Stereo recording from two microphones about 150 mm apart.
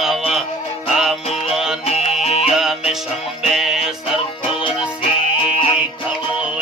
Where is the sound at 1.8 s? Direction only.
45° left (ahead or behind).